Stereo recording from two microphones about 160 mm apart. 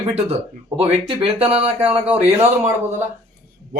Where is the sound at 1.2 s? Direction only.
35° right (ahead or behind).